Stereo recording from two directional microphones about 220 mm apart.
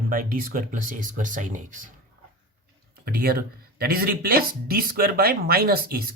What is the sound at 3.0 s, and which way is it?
Speech, 45° right (ahead or behind).